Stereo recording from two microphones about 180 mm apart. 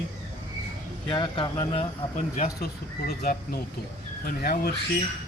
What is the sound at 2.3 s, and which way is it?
Speech, 55° left (ahead or behind).